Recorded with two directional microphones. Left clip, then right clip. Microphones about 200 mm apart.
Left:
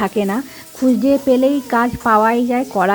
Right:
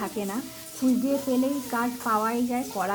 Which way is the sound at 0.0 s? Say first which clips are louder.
Left 13 dB; 35° left (ahead or behind).